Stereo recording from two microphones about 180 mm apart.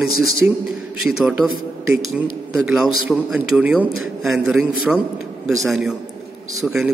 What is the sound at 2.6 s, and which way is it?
A man's voice, centre (ahead or behind).